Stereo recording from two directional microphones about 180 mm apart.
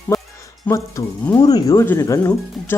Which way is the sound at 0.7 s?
10° left (ahead or behind).